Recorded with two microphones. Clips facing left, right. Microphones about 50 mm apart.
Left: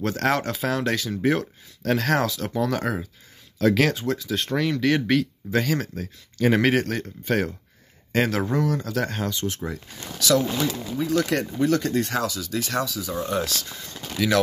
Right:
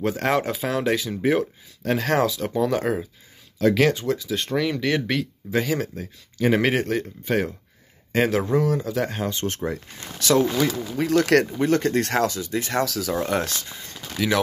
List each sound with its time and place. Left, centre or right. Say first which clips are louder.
0.0 s speech: right 1 dB; centre
9.3 s speech: right 2 dB; right
10.6 s speech: right 3 dB; right
11.5 s speech: right 1 dB; right
12.0 s speech: right 3 dB; right
12.4 s speech: right 2 dB; right
12.8 s speech: right 4 dB; right
14.1 s speech: left 1 dB; centre